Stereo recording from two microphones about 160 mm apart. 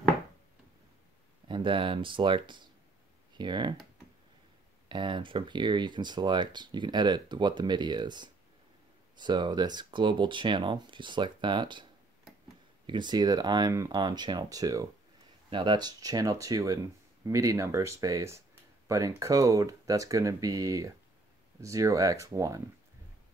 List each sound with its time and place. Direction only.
1.5 s speech: 30° right (ahead or behind)
4.8 s speech: 30° right (ahead or behind)
12.8 s speech: 30° right (ahead or behind)